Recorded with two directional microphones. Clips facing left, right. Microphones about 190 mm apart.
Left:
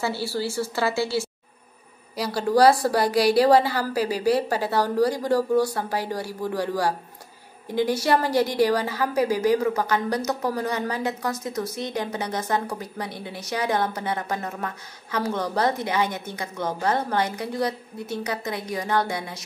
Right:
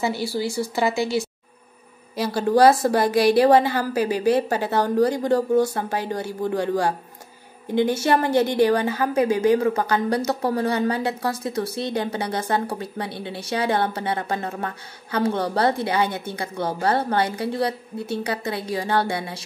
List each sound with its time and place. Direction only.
0.0 s a woman's voice: 15° right (ahead or behind)